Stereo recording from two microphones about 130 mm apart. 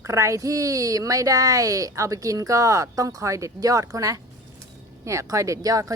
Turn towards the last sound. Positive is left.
turn(degrees=-25)  # may be behind; listen again after turning